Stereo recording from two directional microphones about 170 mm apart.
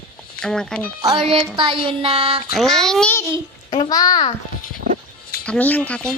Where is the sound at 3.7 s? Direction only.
25° left (ahead or behind).